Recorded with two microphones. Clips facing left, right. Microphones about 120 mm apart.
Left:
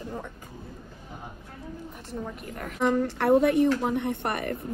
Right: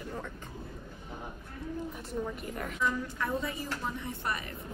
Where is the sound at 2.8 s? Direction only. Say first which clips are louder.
Left 9 dB; 60° left (ahead or behind).